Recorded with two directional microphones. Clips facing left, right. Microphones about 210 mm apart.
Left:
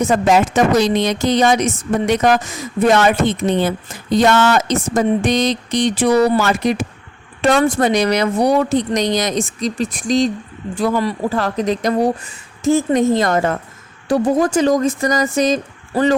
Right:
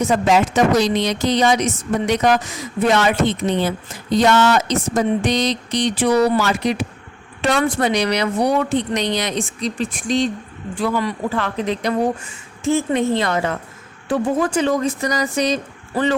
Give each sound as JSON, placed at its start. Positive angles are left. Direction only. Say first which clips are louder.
{"t": 0.0, "sound": "speech", "louder": "left 2 dB", "side_deg": 50}